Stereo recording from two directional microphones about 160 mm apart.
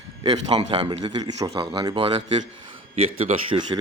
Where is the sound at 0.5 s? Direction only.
40° right (ahead or behind).